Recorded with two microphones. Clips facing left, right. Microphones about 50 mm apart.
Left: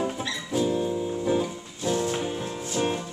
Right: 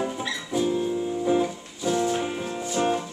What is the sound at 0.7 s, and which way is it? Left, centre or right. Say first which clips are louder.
Music: right 1 dB; centre.